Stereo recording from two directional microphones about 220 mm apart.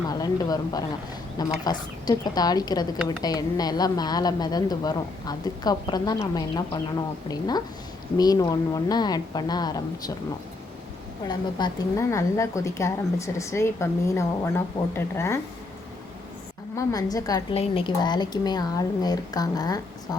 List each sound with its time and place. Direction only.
0.1 s a woman's voice: 15° left (ahead or behind)
11.3 s a woman's voice: 20° left (ahead or behind)
16.7 s a woman's voice: 15° left (ahead or behind)